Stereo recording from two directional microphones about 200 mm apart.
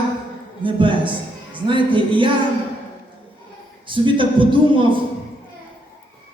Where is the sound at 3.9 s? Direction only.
25° right (ahead or behind).